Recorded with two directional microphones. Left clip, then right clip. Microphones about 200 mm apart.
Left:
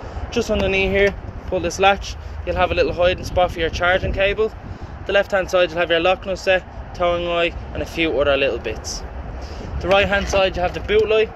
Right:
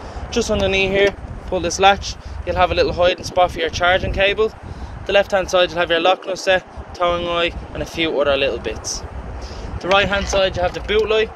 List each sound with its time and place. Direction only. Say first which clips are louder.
0.3 s speech: right 1 dB; 5° right (ahead or behind)
9.8 s speech: even; centre (ahead or behind)
10.3 s speech: right 1 dB; 10° left (ahead or behind)
10.9 s speech: left 1 dB; 5° right (ahead or behind)